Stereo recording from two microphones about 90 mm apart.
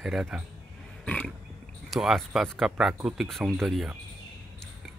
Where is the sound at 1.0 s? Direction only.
15° left (ahead or behind).